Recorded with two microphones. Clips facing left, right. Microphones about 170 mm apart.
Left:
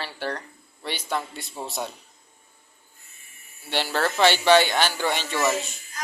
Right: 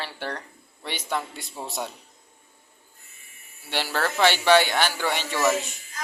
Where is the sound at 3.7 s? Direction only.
10° right (ahead or behind).